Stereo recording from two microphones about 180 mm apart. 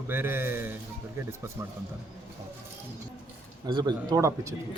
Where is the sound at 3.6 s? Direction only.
25° right (ahead or behind).